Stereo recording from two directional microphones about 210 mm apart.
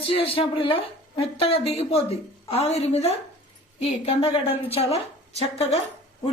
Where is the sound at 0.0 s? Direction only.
25° left (ahead or behind).